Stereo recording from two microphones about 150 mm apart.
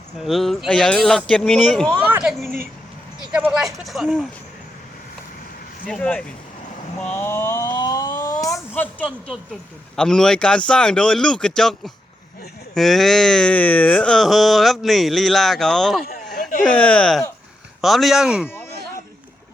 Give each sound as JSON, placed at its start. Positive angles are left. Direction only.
{"t": 0.2, "sound": "speech", "side_deg": 0}
{"t": 1.9, "sound": "speech", "side_deg": -15}
{"t": 2.3, "sound": "speech", "side_deg": 0}
{"t": 5.8, "sound": "speech", "side_deg": 10}
{"t": 7.0, "sound": "a sound", "side_deg": 15}
{"t": 9.9, "sound": "speech", "side_deg": 5}
{"t": 16.3, "sound": "a sound", "side_deg": 60}
{"t": 16.7, "sound": "speech", "side_deg": 10}